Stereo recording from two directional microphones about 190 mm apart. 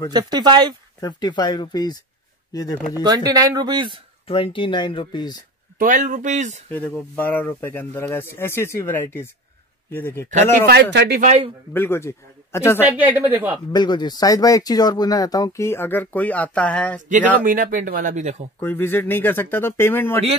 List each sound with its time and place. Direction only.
0.1 s speech: 20° right (ahead or behind)
1.0 s speech: 20° left (ahead or behind)
3.1 s speech: 20° right (ahead or behind)
4.3 s speech: 25° left (ahead or behind)
5.8 s speech: 45° right (ahead or behind)
6.7 s speech: 10° left (ahead or behind)
10.7 s speech: 65° right (ahead or behind)
11.1 s speech: 35° right (ahead or behind)
11.7 s speech: 10° left (ahead or behind)
12.8 s speech: 10° right (ahead or behind)
13.7 s speech: 20° left (ahead or behind); by 17.0 s 5° left (ahead or behind)
17.1 s a man's voice: 45° right (ahead or behind)
18.6 s speech: 10° left (ahead or behind)